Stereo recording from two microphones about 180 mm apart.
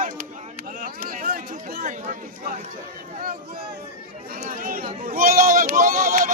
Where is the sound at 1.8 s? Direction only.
40° right (ahead or behind).